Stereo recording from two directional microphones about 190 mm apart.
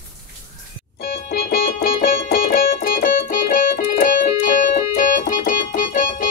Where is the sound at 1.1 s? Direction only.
55° left (ahead or behind).